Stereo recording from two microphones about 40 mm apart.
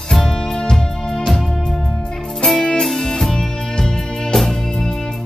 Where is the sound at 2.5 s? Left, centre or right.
Centre.